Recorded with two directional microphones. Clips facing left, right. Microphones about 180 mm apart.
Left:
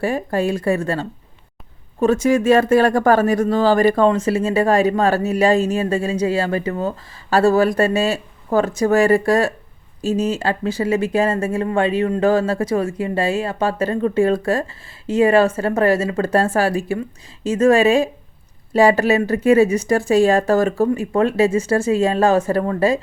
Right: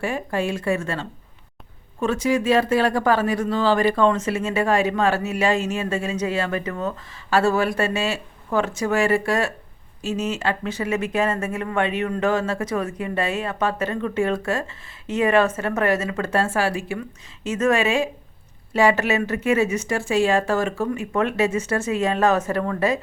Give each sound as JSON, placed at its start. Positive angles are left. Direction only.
{"t": 0.0, "sound": "speech", "side_deg": 40}